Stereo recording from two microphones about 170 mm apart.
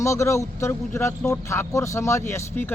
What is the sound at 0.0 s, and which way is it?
Speech, 15° left (ahead or behind).